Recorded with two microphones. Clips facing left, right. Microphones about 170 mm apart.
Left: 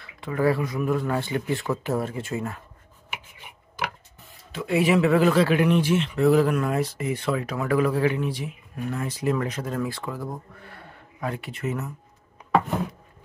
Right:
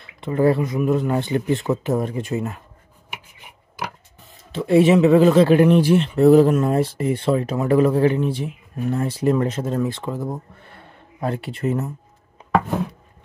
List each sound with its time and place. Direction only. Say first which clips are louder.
0.0 s speech: right 5 dB; 25° right (ahead or behind)
4.5 s speech: right 7 dB; 30° right (ahead or behind)
5.5 s speech: right 6 dB; 35° right (ahead or behind)